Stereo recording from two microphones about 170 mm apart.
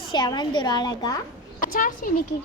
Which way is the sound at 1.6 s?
55° left (ahead or behind).